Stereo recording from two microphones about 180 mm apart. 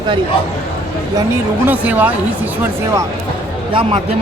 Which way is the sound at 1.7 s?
10° right (ahead or behind).